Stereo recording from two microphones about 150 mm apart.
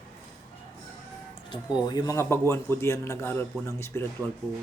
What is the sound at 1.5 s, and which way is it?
Speech, 30° left (ahead or behind).